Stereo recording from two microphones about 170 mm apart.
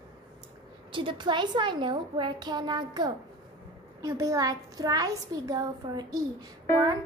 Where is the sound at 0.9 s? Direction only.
30° right (ahead or behind).